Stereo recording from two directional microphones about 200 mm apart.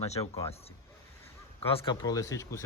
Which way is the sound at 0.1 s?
30° left (ahead or behind).